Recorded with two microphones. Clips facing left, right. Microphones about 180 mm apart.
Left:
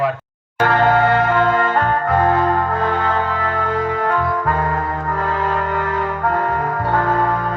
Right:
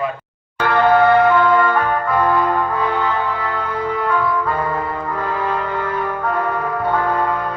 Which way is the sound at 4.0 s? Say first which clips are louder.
Even; 45° left (ahead or behind).